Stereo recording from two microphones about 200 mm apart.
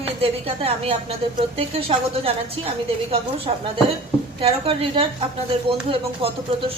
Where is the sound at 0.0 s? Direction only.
30° right (ahead or behind).